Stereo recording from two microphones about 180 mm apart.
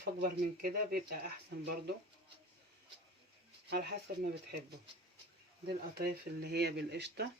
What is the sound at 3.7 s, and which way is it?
Speech, 60° right (ahead or behind).